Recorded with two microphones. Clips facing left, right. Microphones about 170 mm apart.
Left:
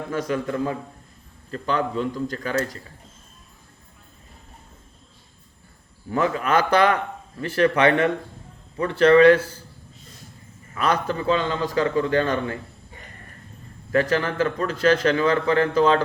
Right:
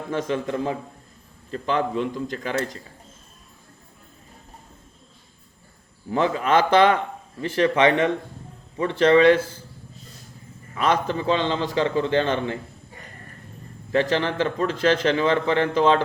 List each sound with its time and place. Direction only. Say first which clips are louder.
0.1 s a man's voice: right 1 dB; 25° right (ahead or behind)
6.1 s a man's voice: right 1 dB; 20° right (ahead or behind)
10.8 s a man's voice: right 1 dB; 20° right (ahead or behind)
13.9 s a man's voice: even; 25° right (ahead or behind)